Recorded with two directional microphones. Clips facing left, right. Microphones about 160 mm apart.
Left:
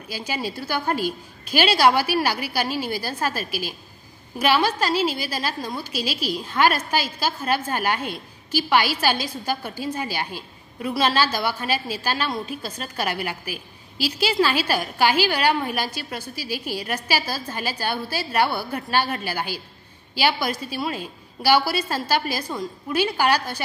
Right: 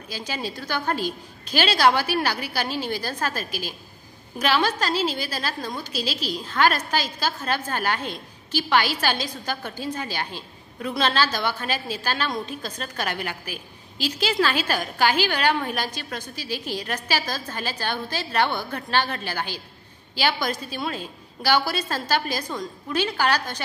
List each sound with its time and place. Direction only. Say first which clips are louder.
0.1 s a woman's voice: left 2 dB; 10° left (ahead or behind)